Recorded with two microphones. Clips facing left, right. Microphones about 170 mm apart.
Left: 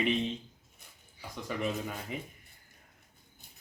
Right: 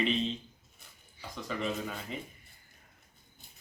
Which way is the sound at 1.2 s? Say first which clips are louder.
Left 1 dB; 10° left (ahead or behind).